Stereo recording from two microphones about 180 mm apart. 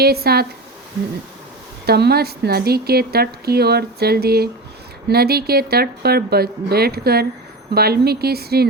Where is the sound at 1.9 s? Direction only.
60° right (ahead or behind).